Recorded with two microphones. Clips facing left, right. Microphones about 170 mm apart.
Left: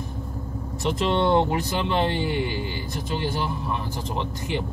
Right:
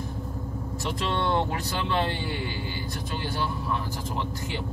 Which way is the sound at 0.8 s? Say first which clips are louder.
Left 6 dB; 20° left (ahead or behind).